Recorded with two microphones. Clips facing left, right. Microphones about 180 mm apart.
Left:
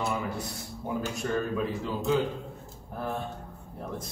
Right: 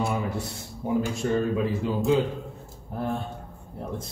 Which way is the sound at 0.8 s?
10° right (ahead or behind).